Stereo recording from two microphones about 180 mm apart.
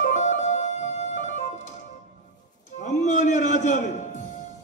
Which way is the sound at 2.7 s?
40° left (ahead or behind).